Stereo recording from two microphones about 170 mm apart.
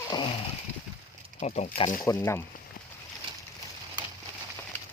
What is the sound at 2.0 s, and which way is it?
Speech, 15° left (ahead or behind).